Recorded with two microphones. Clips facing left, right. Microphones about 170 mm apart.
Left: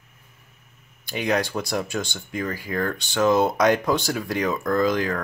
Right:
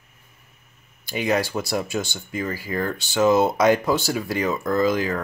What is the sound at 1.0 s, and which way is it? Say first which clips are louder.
Speech: right 1 dB; 5° right (ahead or behind).